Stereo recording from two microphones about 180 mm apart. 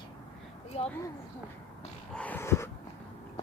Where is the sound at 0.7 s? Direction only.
35° left (ahead or behind).